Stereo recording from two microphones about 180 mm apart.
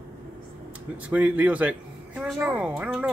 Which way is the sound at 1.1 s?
10° right (ahead or behind).